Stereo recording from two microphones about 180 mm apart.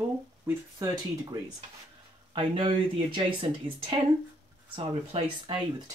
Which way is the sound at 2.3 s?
30° right (ahead or behind).